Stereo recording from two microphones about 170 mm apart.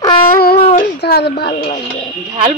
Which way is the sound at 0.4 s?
65° left (ahead or behind).